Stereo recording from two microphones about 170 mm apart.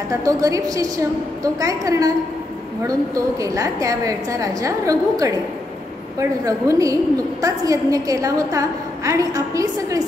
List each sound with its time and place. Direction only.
0.1 s a woman's voice: 20° right (ahead or behind)